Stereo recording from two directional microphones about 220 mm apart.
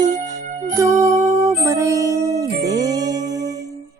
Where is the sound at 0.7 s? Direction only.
15° right (ahead or behind).